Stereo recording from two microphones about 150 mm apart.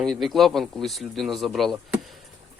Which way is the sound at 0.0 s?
Centre (ahead or behind).